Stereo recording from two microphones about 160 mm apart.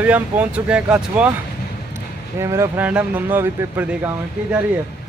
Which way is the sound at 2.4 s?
15° right (ahead or behind).